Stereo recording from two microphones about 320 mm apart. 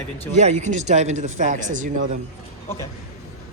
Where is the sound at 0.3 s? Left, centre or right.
Right.